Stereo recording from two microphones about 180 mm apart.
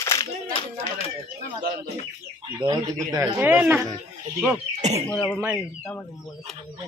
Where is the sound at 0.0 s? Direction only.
15° left (ahead or behind).